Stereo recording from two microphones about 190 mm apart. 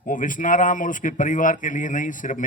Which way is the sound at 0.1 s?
45° left (ahead or behind).